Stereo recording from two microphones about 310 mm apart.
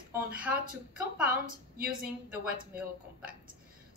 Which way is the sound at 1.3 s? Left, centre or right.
Right.